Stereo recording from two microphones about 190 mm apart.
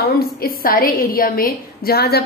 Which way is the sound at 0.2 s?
50° left (ahead or behind).